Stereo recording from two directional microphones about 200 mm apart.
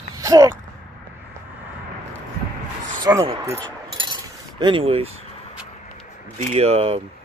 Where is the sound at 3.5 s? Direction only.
20° right (ahead or behind).